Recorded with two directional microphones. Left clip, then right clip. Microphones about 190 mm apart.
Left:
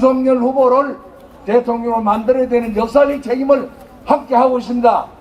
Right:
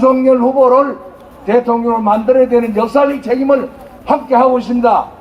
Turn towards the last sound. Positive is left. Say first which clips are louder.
# right 2 dB
turn(degrees=15)  # may be behind; listen again after turning